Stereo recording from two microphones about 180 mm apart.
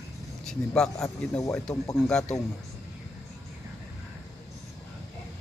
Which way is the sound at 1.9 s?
5° left (ahead or behind).